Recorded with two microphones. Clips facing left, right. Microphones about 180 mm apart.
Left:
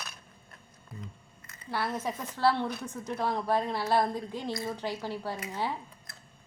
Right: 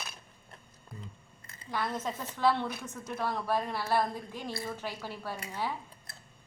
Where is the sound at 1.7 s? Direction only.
10° left (ahead or behind).